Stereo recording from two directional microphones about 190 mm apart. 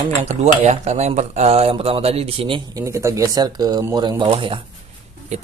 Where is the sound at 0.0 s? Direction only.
35° right (ahead or behind).